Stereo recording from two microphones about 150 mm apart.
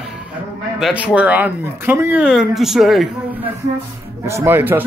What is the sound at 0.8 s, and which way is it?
Speech, 5° right (ahead or behind).